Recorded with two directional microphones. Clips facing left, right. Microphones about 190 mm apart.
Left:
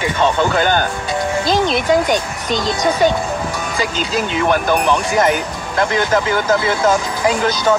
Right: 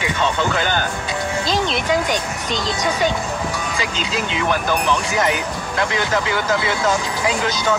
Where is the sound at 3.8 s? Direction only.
45° left (ahead or behind).